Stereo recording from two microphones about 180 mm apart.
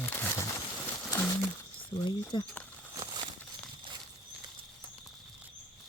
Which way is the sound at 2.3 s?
25° left (ahead or behind).